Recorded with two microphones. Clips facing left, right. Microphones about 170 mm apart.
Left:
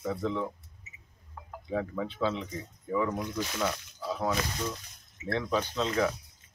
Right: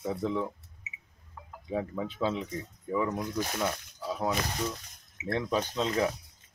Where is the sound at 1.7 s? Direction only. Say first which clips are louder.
Even; 15° right (ahead or behind).